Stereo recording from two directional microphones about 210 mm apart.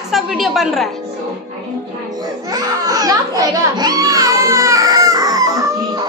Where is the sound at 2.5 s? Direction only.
20° right (ahead or behind).